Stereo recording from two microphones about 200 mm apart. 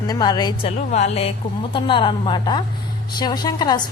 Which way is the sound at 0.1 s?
20° left (ahead or behind).